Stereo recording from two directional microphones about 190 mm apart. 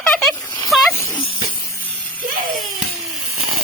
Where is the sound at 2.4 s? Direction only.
50° right (ahead or behind).